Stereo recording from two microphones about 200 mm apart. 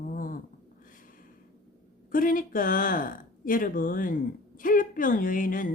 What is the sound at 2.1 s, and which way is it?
A woman's voice, 40° left (ahead or behind).